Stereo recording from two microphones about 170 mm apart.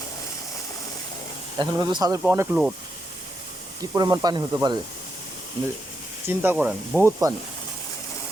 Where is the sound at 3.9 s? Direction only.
25° right (ahead or behind).